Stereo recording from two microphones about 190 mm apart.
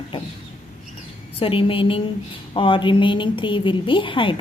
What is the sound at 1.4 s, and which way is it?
A woman's voice, 30° left (ahead or behind).